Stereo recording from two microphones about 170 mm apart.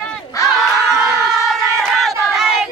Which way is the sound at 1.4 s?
Centre (ahead or behind).